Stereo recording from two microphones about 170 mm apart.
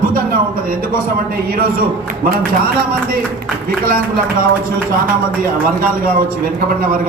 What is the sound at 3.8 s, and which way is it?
Speech, 55° right (ahead or behind).